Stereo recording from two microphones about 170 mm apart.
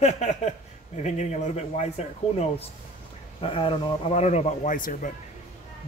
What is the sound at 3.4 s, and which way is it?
Speech, 30° left (ahead or behind).